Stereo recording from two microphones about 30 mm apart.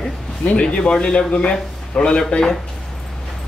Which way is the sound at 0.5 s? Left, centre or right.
Left.